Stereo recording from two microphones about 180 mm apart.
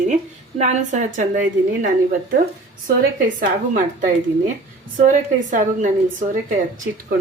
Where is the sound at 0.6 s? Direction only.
40° right (ahead or behind).